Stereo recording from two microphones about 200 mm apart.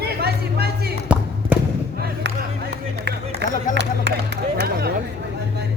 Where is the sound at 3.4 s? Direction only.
55° right (ahead or behind).